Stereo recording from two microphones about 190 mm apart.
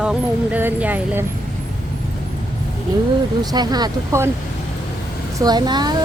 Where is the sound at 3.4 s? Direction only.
20° right (ahead or behind).